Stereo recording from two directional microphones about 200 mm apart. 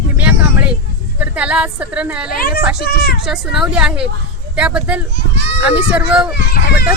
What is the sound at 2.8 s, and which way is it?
Speech, 50° left (ahead or behind).